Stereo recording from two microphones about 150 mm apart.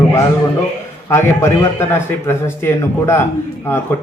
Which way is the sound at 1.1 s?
15° left (ahead or behind).